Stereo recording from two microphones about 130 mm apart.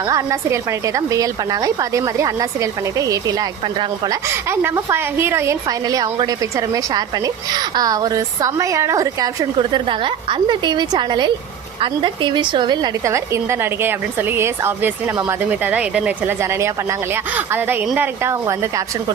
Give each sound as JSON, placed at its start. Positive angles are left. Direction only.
{"t": 0.1, "sound": "a woman's voice", "side_deg": -25}
{"t": 4.3, "sound": "a woman's voice", "side_deg": -20}
{"t": 9.6, "sound": "a woman's voice", "side_deg": -40}
{"t": 15.1, "sound": "a woman's voice", "side_deg": -25}
{"t": 15.4, "sound": "speech", "side_deg": -10}
{"t": 16.4, "sound": "a woman's voice", "side_deg": -20}